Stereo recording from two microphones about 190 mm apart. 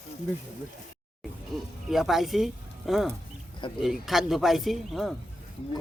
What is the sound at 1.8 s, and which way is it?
Speech, centre (ahead or behind).